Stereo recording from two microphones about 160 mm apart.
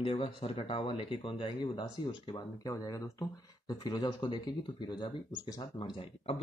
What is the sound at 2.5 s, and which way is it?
Speech, 20° left (ahead or behind).